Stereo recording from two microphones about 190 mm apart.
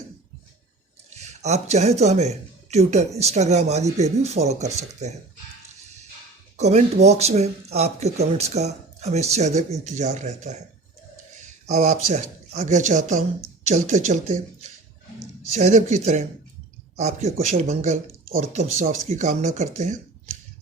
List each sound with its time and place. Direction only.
1.1 s speech: 35° right (ahead or behind)
6.6 s speech: 35° right (ahead or behind)
15.5 s speech: 35° right (ahead or behind)